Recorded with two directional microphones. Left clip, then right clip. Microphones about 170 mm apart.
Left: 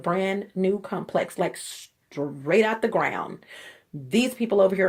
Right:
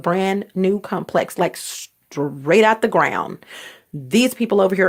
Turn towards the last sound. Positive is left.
turn(degrees=-50)  # may be behind; listen again after turning